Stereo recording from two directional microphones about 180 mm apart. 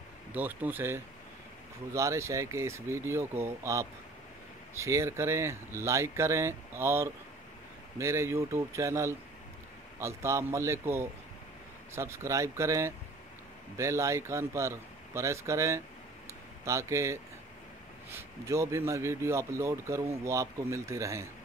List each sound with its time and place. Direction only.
0.3 s a man's voice: 10° right (ahead or behind)